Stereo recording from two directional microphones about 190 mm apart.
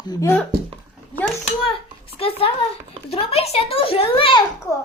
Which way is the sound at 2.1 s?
30° left (ahead or behind).